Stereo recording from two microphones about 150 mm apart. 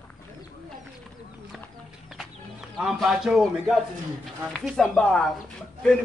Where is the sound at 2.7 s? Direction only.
Centre (ahead or behind).